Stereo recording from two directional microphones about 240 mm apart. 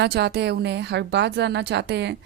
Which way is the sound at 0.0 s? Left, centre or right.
Right.